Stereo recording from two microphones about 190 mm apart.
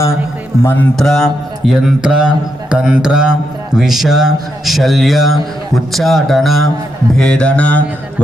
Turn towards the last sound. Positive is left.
turn(degrees=5)  # may be behind; listen again after turning